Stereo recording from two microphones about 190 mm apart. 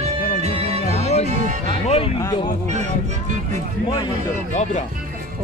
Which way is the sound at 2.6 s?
35° right (ahead or behind).